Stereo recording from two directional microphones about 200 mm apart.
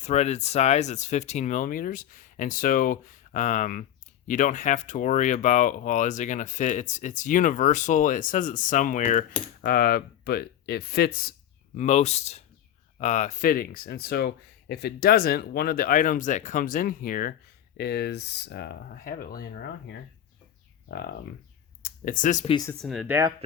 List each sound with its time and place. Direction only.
0.0 s speech: 35° left (ahead or behind); by 11.3 s 50° left (ahead or behind)
11.8 s speech: 35° left (ahead or behind)
17.7 s speech: 55° left (ahead or behind)
21.8 s speech: 45° left (ahead or behind)
22.8 s speech: centre (ahead or behind)